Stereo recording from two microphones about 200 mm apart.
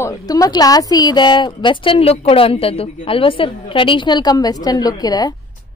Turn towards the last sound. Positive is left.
turn(degrees=20)  # may be behind; listen again after turning